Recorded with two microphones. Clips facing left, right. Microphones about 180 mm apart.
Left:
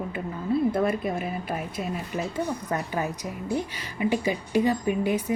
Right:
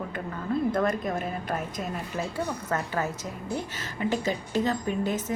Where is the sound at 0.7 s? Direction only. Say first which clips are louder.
Left 1 dB; 10° left (ahead or behind).